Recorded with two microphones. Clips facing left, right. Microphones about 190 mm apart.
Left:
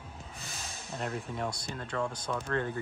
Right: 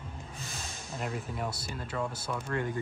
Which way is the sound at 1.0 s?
5° right (ahead or behind).